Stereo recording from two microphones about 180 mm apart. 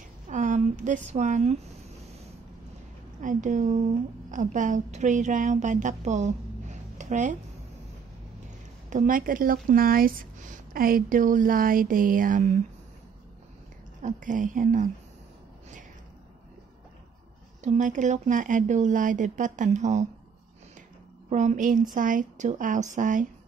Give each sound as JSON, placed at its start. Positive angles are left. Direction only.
{"t": 0.3, "sound": "speech", "side_deg": -45}
{"t": 3.2, "sound": "a woman's voice", "side_deg": -45}
{"t": 8.9, "sound": "speech", "side_deg": -50}
{"t": 14.0, "sound": "speech", "side_deg": -45}
{"t": 17.6, "sound": "speech", "side_deg": -45}
{"t": 21.3, "sound": "speech", "side_deg": -40}